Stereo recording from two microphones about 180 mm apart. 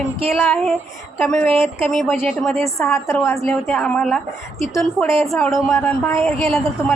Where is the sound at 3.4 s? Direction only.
Centre (ahead or behind).